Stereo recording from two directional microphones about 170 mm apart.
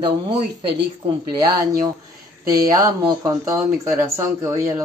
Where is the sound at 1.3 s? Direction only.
20° right (ahead or behind).